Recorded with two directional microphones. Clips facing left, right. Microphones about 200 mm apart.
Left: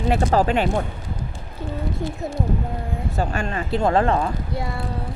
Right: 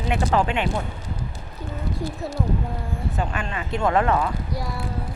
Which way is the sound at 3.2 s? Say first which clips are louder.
Left 5 dB; 40° left (ahead or behind).